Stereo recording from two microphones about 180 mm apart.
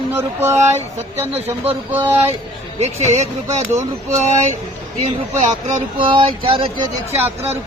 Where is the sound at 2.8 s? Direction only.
35° right (ahead or behind).